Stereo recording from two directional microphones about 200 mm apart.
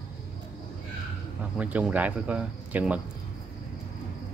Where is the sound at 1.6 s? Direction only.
5° right (ahead or behind).